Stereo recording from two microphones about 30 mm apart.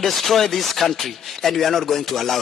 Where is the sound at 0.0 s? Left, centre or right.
Centre.